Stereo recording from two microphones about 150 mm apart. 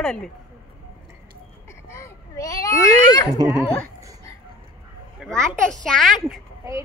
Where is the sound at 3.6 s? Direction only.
10° left (ahead or behind).